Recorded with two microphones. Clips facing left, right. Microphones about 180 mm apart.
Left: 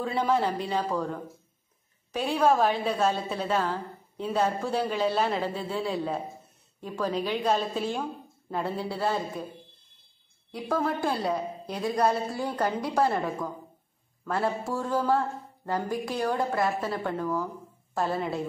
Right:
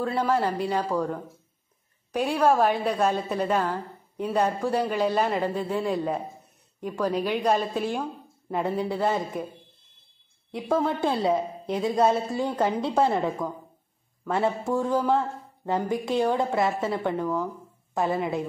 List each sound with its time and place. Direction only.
0.0 s a woman's voice: 5° right (ahead or behind)
10.5 s a woman's voice: 20° right (ahead or behind)